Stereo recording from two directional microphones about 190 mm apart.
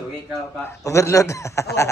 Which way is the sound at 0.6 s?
15° left (ahead or behind).